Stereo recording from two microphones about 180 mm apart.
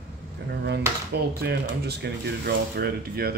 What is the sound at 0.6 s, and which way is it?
Speech, 65° right (ahead or behind).